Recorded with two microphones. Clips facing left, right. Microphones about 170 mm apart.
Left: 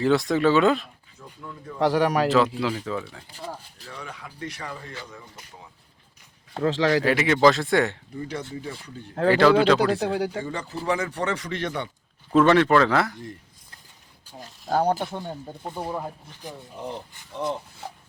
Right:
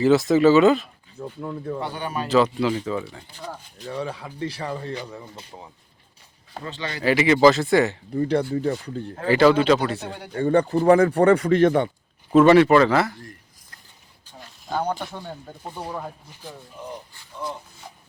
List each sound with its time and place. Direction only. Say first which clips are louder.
0.0 s speech: right 4 dB; 5° right (ahead or behind)
1.2 s speech: right 10 dB; 40° right (ahead or behind)
1.8 s speech: left 8 dB; 90° left
2.3 s speech: right 2 dB; centre (ahead or behind)
3.8 s speech: right 10 dB; 30° right (ahead or behind)
6.6 s speech: left 11 dB; 85° left
7.0 s speech: right 6 dB; centre (ahead or behind)
8.1 s speech: right 11 dB; 55° right (ahead or behind)
9.3 s speech: right 1 dB; centre (ahead or behind)
10.1 s speech: left 11 dB; 90° left
10.4 s speech: right 12 dB; 60° right (ahead or behind)
12.3 s speech: right 4 dB; 10° right (ahead or behind)
14.4 s a sound: left 4 dB; 40° left (ahead or behind)
15.1 s speech: left 2 dB; 20° left (ahead or behind)